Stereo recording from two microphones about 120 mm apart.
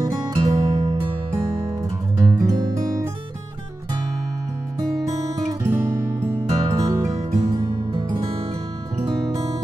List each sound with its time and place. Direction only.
0.4 s music: 35° right (ahead or behind)
2.1 s music: 30° right (ahead or behind)
5.5 s music: 20° right (ahead or behind)